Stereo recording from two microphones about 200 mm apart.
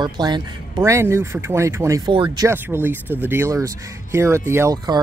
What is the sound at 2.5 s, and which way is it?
Speech, 10° right (ahead or behind).